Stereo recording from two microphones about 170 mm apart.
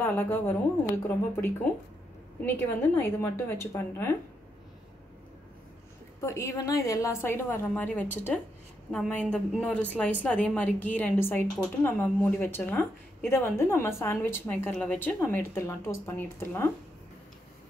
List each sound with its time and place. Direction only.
0.0 s a woman's voice: 10° left (ahead or behind)
6.2 s a woman's voice: 15° left (ahead or behind)